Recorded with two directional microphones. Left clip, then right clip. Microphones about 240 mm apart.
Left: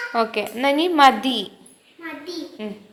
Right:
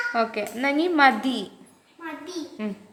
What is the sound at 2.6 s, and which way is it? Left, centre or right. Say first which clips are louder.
Speech: right 2 dB; centre.